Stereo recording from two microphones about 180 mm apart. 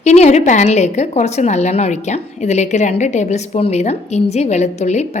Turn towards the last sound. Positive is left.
turn(degrees=40)  # may be behind; listen again after turning